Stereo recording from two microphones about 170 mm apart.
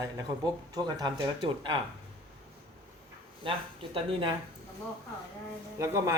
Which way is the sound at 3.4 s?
30° right (ahead or behind).